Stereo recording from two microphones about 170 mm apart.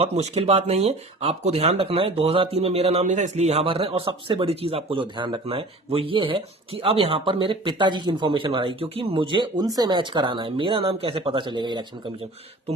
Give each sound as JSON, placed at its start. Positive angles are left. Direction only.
{"t": 0.0, "sound": "speech", "side_deg": -35}